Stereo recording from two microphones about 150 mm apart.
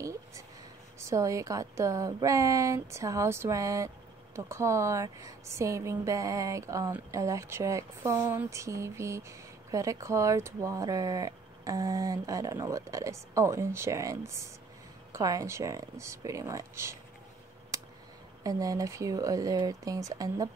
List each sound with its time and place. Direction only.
0.0 s a sound: 20° right (ahead or behind)
0.9 s a woman's voice: 20° right (ahead or behind)
18.4 s a woman's voice: 25° right (ahead or behind)